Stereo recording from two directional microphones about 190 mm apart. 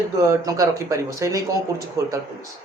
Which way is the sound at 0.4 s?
15° right (ahead or behind).